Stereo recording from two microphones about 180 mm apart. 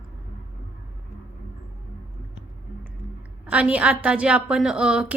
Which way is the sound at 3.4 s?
5° right (ahead or behind).